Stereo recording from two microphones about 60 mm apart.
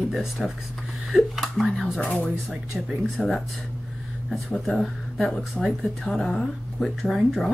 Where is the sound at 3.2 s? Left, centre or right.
Centre.